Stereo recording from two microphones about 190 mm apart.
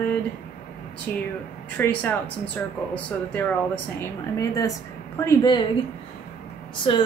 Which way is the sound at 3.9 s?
15° left (ahead or behind).